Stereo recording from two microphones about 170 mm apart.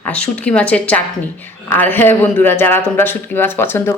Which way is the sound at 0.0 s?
10° left (ahead or behind).